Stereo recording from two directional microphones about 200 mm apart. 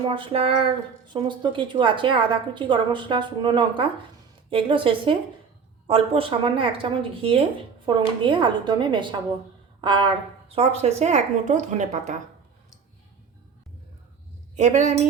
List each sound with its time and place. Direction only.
0.0 s a woman's voice: 25° right (ahead or behind)
14.5 s a woman's voice: 35° right (ahead or behind)